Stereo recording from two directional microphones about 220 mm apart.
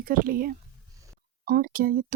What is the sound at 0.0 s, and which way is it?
Speech, 40° right (ahead or behind).